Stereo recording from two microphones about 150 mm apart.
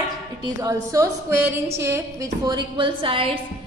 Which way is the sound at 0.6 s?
20° right (ahead or behind).